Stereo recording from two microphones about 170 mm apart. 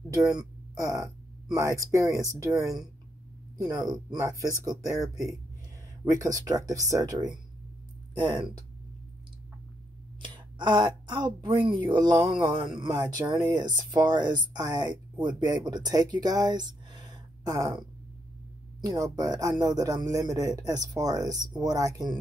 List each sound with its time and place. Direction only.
0.1 s speech: 20° right (ahead or behind)
6.1 s speech: 20° right (ahead or behind)
10.2 s speech: 25° right (ahead or behind)
18.8 s speech: 20° right (ahead or behind)